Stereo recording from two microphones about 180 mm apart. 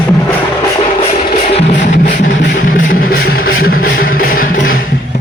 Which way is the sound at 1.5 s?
45° left (ahead or behind).